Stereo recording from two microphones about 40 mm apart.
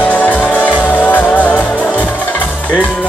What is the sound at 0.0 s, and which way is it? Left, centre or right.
Music, left.